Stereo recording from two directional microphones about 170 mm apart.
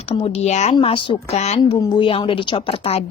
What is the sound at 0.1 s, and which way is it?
A woman's voice, 40° left (ahead or behind).